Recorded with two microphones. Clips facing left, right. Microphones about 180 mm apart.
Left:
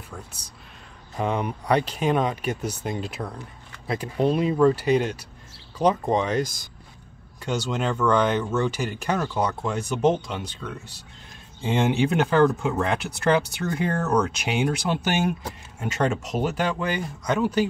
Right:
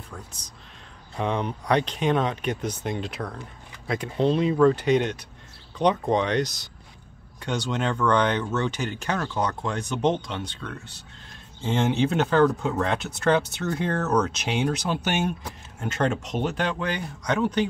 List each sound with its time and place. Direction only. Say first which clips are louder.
0.1 s speech: left 1 dB; 10° left (ahead or behind)